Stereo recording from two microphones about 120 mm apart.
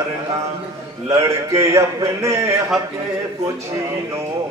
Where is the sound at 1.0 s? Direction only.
25° right (ahead or behind).